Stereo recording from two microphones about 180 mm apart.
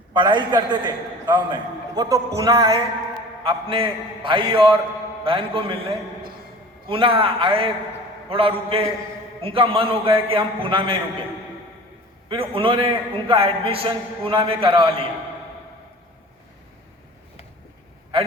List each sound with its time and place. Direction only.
0.1 s a man's voice: 25° right (ahead or behind)
3.4 s a man's voice: 30° right (ahead or behind)
12.3 s a man's voice: 30° right (ahead or behind)